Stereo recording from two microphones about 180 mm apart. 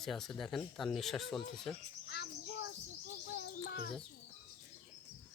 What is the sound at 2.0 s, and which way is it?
Cricket, 65° left (ahead or behind).